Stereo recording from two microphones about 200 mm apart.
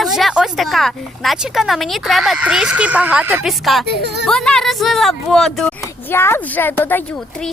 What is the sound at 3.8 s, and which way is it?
Speech, 55° right (ahead or behind).